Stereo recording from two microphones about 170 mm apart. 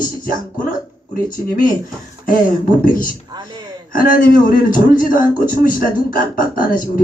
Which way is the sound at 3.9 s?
55° left (ahead or behind).